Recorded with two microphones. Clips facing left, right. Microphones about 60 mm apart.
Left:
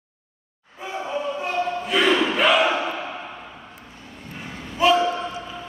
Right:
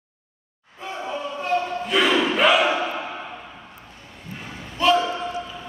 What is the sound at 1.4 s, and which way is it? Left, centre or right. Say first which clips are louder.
Battle cry: right 1 dB; centre.